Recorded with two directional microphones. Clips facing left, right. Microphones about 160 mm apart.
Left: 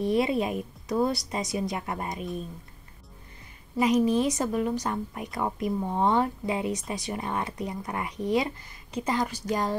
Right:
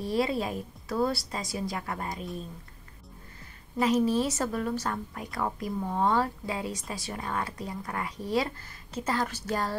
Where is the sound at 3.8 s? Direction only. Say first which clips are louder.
Left 2 dB; 15° left (ahead or behind).